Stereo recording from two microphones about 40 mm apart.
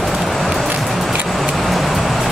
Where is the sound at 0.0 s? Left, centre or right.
Centre.